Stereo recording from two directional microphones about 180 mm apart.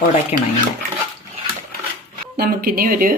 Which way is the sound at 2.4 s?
55° right (ahead or behind).